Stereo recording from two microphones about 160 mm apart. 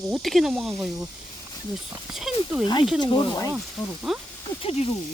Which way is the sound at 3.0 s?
25° left (ahead or behind).